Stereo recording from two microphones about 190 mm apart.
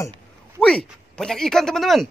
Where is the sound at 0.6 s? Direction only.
5° left (ahead or behind).